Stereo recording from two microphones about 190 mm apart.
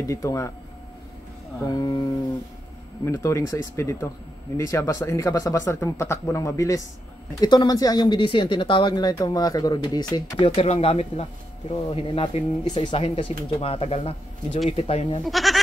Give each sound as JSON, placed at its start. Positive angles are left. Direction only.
{"t": 0.0, "sound": "speech", "side_deg": 15}
{"t": 1.6, "sound": "speech", "side_deg": 20}
{"t": 3.1, "sound": "speech", "side_deg": 15}
{"t": 15.2, "sound": "speech", "side_deg": 0}